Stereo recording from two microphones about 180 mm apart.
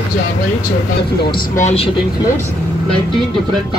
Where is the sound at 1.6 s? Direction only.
35° left (ahead or behind).